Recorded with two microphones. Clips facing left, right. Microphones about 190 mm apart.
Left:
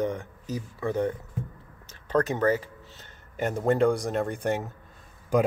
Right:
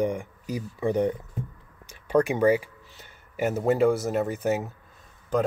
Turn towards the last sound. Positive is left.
turn(degrees=10)  # may be behind; listen again after turning